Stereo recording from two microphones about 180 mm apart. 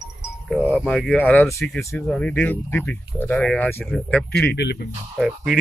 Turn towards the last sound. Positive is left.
turn(degrees=0)  # may be behind; listen again after turning